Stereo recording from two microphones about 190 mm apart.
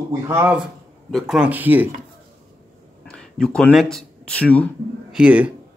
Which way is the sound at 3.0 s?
5° left (ahead or behind).